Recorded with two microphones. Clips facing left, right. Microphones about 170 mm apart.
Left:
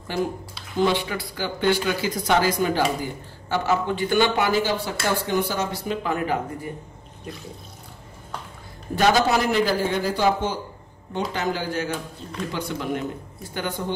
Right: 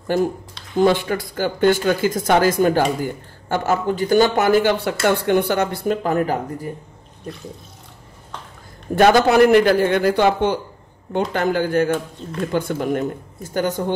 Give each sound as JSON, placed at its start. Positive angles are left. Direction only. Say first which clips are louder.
{"t": 0.8, "sound": "speech", "louder": "right 6 dB", "side_deg": -45}
{"t": 8.9, "sound": "speech", "louder": "right 6 dB", "side_deg": -55}